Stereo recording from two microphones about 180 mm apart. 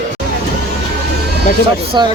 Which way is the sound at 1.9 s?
25° right (ahead or behind).